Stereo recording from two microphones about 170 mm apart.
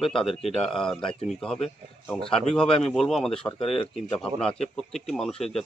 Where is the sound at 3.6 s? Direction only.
30° left (ahead or behind).